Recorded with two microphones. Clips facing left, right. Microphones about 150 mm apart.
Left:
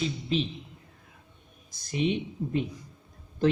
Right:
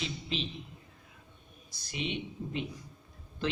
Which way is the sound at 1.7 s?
45° left (ahead or behind).